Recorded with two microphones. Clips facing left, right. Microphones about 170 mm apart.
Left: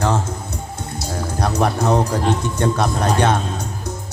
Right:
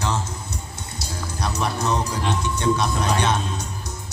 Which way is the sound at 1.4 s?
55° left (ahead or behind).